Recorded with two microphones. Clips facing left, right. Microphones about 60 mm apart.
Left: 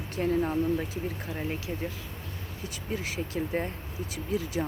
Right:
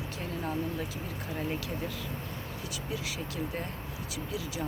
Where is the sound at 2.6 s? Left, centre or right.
Left.